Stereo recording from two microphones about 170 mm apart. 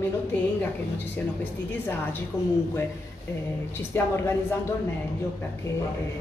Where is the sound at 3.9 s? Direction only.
15° left (ahead or behind).